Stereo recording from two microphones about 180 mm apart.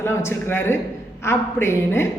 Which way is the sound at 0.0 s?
15° left (ahead or behind).